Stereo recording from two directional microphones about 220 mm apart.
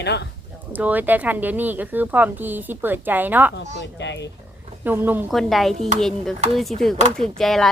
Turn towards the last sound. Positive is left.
turn(degrees=0)  # may be behind; listen again after turning